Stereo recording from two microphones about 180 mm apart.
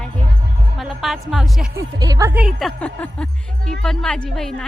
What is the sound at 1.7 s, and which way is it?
Speech, 20° right (ahead or behind).